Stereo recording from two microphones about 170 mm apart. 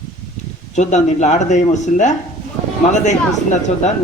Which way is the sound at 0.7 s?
45° left (ahead or behind).